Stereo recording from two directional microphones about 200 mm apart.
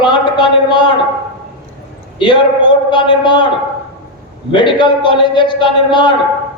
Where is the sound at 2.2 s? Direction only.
25° left (ahead or behind).